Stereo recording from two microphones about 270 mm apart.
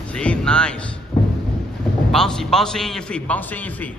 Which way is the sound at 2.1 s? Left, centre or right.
Centre.